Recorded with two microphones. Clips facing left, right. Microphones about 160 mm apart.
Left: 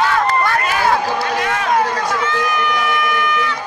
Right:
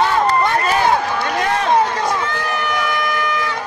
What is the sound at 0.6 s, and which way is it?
Speech, 25° right (ahead or behind).